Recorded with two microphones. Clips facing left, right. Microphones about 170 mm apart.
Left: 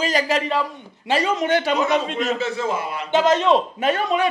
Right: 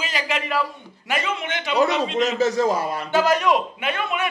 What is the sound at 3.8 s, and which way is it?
Speech, 35° left (ahead or behind).